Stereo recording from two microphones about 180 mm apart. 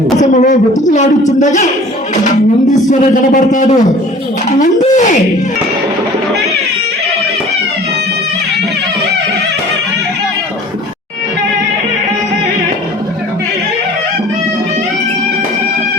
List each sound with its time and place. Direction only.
0.2 s a man's voice: 40° left (ahead or behind)
2.9 s a man's voice: 45° left (ahead or behind)